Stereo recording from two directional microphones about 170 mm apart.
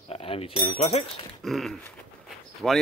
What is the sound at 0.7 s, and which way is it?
Speech, 40° left (ahead or behind).